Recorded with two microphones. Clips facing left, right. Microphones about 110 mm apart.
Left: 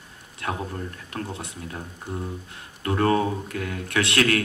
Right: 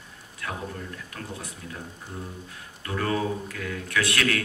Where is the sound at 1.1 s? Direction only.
35° left (ahead or behind).